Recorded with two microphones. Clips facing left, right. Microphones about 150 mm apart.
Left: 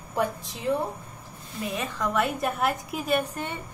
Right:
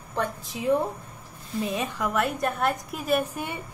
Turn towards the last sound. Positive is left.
turn(degrees=-10)  # may be behind; listen again after turning